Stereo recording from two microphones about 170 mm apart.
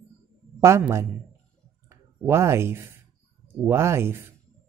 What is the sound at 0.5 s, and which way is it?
Speech, 15° right (ahead or behind).